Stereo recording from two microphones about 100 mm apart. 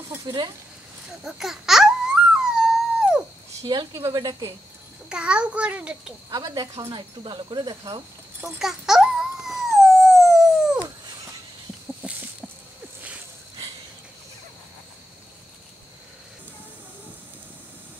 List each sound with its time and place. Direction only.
0.3 s speech: 55° right (ahead or behind)
1.2 s a sound: 5° right (ahead or behind)
3.6 s speech: 40° right (ahead or behind)
5.1 s a child's voice: 10° right (ahead or behind)
6.3 s speech: 45° right (ahead or behind)
6.8 s speech: 55° right (ahead or behind)
8.5 s dog: 5° right (ahead or behind)
12.0 s livestock: 15° right (ahead or behind)